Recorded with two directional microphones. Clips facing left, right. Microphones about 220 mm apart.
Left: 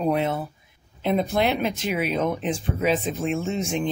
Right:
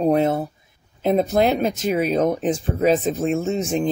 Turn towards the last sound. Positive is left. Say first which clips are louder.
# right 4 dB
turn(degrees=-40)  # may be behind; listen again after turning